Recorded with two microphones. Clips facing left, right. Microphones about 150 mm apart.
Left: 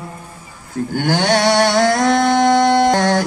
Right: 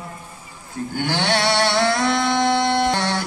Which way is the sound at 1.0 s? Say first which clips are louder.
Left 5 dB; 45° left (ahead or behind).